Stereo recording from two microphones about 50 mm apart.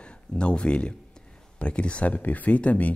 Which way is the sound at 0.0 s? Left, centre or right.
Left.